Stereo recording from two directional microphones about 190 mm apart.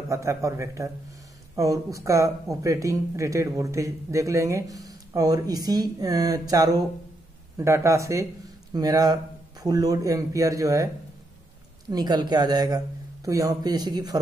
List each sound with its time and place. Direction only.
0.1 s speech: 15° right (ahead or behind)
11.9 s a man's voice: 20° right (ahead or behind)